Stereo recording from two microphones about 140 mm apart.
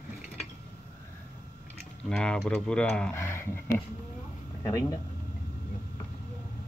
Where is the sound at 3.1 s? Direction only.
15° left (ahead or behind).